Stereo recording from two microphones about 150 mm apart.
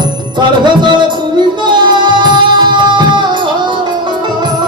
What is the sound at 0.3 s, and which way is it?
Music, 30° right (ahead or behind).